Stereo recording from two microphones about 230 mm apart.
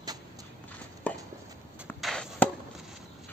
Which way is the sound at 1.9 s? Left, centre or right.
Centre.